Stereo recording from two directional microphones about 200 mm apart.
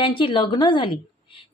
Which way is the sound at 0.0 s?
25° left (ahead or behind).